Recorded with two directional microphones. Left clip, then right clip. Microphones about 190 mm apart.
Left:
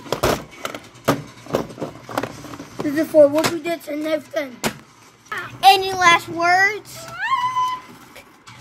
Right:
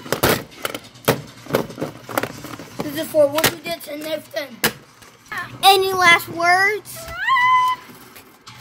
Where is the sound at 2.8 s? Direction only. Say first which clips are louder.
Left 4 dB; 15° right (ahead or behind).